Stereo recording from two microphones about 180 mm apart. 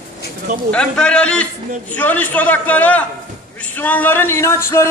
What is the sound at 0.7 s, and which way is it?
A man's voice, 5° left (ahead or behind).